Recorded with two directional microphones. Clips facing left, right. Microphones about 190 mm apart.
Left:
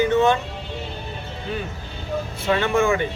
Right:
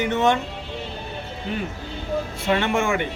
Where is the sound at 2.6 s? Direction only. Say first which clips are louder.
Left 3 dB; 20° right (ahead or behind).